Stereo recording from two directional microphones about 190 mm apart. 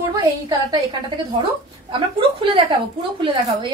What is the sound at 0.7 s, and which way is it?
Speech, 25° right (ahead or behind).